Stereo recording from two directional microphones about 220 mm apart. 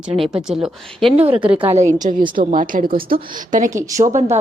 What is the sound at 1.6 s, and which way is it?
A woman's voice, 30° right (ahead or behind).